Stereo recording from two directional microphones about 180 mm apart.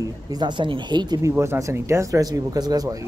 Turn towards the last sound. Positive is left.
turn(degrees=-20)  # may be behind; listen again after turning